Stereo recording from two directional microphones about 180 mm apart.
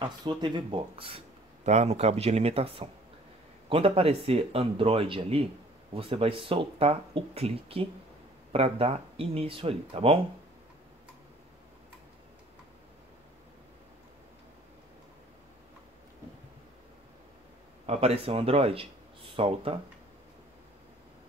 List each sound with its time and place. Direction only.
0.0 s speech: 25° right (ahead or behind)
1.6 s speech: 40° right (ahead or behind)
17.8 s speech: 35° right (ahead or behind)